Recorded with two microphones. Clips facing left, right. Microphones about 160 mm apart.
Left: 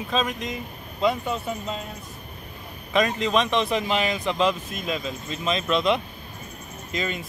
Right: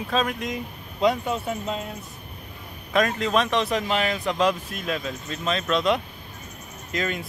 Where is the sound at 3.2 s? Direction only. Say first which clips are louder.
Even; 5° right (ahead or behind).